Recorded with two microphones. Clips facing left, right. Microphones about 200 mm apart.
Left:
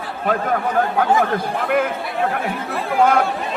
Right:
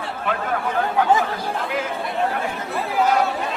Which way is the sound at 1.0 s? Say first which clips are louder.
Even; 55° left (ahead or behind).